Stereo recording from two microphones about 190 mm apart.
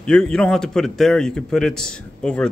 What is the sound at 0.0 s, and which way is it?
A man's voice, 5° left (ahead or behind).